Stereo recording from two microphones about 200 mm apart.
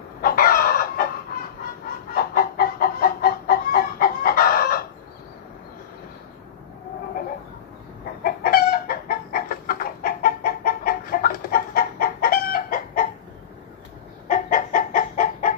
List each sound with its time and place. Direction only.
0.2 s chicken: 45° left (ahead or behind)
2.1 s chicken: 45° left (ahead or behind)
8.2 s chicken: 45° left (ahead or behind)
14.2 s chicken: 40° left (ahead or behind)